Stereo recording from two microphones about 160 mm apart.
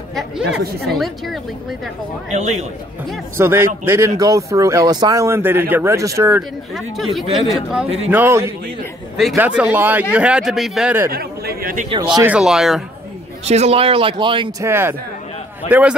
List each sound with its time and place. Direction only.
0.1 s speech: centre (ahead or behind)
2.3 s a man's voice: 50° right (ahead or behind)
3.3 s speech: 15° right (ahead or behind)
6.7 s speech: centre (ahead or behind)
7.7 s speech: 10° right (ahead or behind)
11.1 s speech: 70° right (ahead or behind)
11.9 s speech: 30° right (ahead or behind)
12.2 s speech: 5° right (ahead or behind)
13.5 s speech: 40° right (ahead or behind)
14.6 s speech: 15° right (ahead or behind)